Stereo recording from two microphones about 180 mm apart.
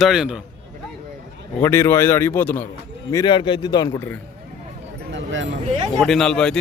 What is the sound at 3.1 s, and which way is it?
Speech, 20° left (ahead or behind).